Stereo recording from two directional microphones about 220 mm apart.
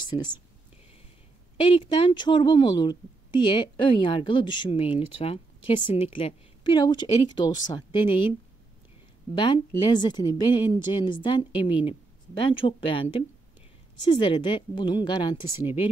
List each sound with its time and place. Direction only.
0.0 s speech: 20° left (ahead or behind)
1.6 s a woman's voice: 20° left (ahead or behind)
9.3 s a woman's voice: 20° left (ahead or behind)